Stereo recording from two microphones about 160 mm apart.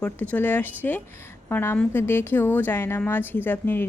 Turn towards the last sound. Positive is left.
turn(degrees=15)  # may be behind; listen again after turning